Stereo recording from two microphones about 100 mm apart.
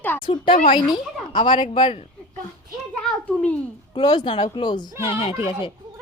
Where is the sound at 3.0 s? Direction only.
10° left (ahead or behind).